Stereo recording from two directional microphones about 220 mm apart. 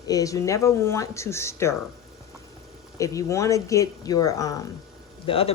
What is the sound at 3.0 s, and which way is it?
Speech, 15° left (ahead or behind).